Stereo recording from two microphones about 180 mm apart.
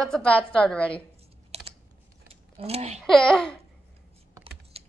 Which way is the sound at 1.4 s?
35° right (ahead or behind).